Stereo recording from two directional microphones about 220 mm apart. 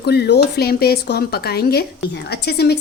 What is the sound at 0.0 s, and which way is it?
A woman's voice, 50° left (ahead or behind).